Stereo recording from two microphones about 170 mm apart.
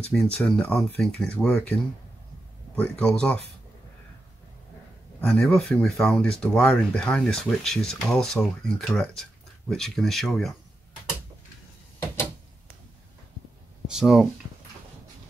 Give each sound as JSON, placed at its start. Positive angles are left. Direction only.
{"t": 0.1, "sound": "speech", "side_deg": 5}
{"t": 5.2, "sound": "speech", "side_deg": 5}
{"t": 13.8, "sound": "a sound", "side_deg": -5}